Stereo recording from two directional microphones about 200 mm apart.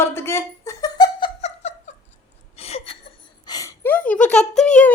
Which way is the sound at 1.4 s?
35° left (ahead or behind).